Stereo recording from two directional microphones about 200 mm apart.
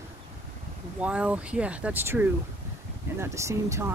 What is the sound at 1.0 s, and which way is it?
Speech, 5° right (ahead or behind).